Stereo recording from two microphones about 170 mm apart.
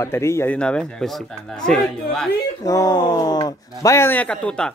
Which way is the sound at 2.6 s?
20° left (ahead or behind).